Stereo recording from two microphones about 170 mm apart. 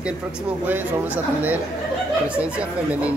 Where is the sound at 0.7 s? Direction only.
10° right (ahead or behind).